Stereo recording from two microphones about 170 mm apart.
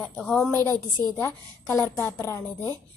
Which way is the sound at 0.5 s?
15° left (ahead or behind).